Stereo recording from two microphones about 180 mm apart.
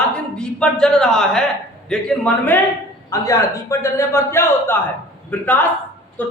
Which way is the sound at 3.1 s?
20° left (ahead or behind).